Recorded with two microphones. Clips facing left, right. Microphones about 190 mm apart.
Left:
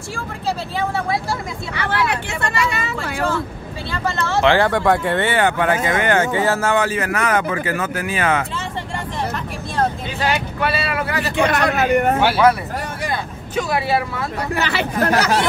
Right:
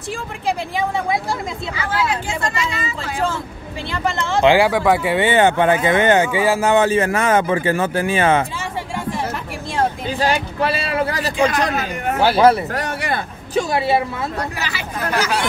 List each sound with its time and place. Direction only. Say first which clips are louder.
0.1 s speech: right 2 dB; 15° right (ahead or behind)
1.8 s speech: left 1 dB; 65° left (ahead or behind)
3.9 s speech: right 1 dB; 15° right (ahead or behind)
5.3 s speech: right 6 dB; 20° right (ahead or behind)
6.3 s speech: right 2 dB; 10° right (ahead or behind)
8.5 s vehicle: right 1 dB; 10° right (ahead or behind)
10.2 s speech: right 1 dB; 35° right (ahead or behind)
11.3 s speech: left 1 dB; 65° left (ahead or behind)
12.2 s speech: right 2 dB; 35° right (ahead or behind)
12.7 s speech: right 2 dB; 70° right (ahead or behind)
13.6 s speech: right 2 dB; 30° right (ahead or behind)
14.5 s speech: left 6 dB; 60° left (ahead or behind)